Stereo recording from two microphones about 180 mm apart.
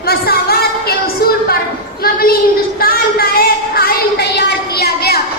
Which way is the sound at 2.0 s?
55° left (ahead or behind).